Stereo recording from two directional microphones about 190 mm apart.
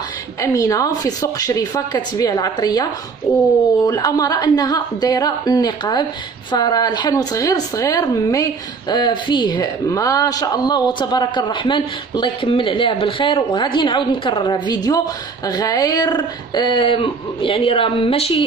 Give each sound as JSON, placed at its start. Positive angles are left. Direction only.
{"t": 0.4, "sound": "speech", "side_deg": 15}